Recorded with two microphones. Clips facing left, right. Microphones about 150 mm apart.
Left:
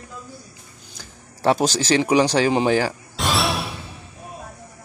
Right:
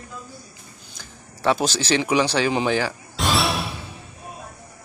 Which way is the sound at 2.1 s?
15° left (ahead or behind).